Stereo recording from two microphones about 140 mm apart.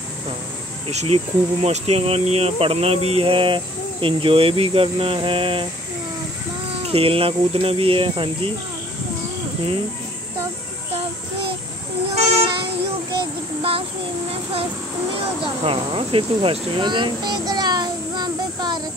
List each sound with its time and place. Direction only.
0.8 s speech: 45° right (ahead or behind)
6.8 s speech: 40° right (ahead or behind)
13.6 s a sound: 40° right (ahead or behind)
15.4 s speech: 40° right (ahead or behind)